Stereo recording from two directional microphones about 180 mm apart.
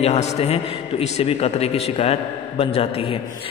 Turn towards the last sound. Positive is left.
turn(degrees=30)  # may be behind; listen again after turning